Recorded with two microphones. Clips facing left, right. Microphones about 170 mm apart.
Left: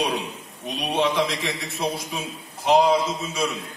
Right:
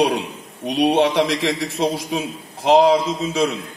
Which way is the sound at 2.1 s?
75° right (ahead or behind).